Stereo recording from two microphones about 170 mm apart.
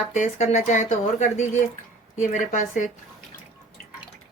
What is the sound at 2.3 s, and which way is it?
Speech, 45° left (ahead or behind).